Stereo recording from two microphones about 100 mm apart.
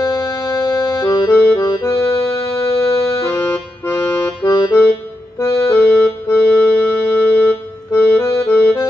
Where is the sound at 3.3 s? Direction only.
25° left (ahead or behind).